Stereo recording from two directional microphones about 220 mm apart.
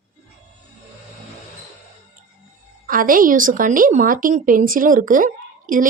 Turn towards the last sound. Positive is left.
turn(degrees=-35)  # may be behind; listen again after turning